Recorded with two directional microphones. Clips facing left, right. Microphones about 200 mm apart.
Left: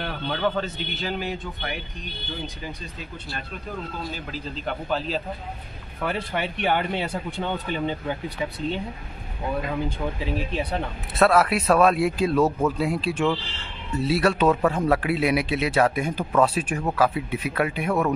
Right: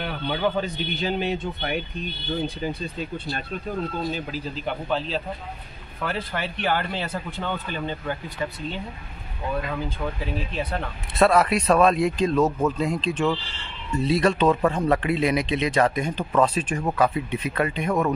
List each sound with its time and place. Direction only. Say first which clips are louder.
0.0 s a man's voice: right 1 dB; 10° right (ahead or behind); by 2.7 s 25° right (ahead or behind)
4.6 s speech: even; 5° left (ahead or behind)
6.0 s speech: left 2 dB; 15° left (ahead or behind)
10.6 s speech: left 1 dB; 15° left (ahead or behind)
11.1 s speech: even; centre (ahead or behind)